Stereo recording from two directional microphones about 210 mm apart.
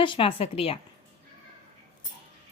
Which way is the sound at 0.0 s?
25° left (ahead or behind).